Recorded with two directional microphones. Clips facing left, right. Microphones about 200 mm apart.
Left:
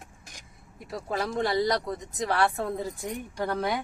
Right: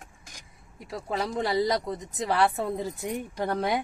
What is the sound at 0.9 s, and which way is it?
Speech, centre (ahead or behind).